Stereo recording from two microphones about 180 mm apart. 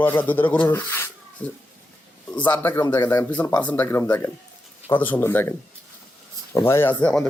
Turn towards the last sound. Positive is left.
turn(degrees=5)  # may be behind; listen again after turning